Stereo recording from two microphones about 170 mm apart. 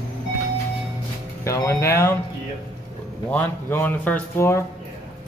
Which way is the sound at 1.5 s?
15° left (ahead or behind).